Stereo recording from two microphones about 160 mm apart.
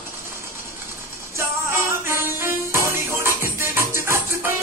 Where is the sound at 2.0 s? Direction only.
15° right (ahead or behind).